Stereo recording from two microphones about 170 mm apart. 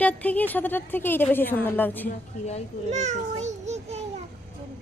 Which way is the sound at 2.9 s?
45° right (ahead or behind).